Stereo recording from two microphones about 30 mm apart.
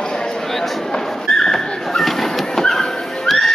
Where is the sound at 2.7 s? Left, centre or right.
Centre.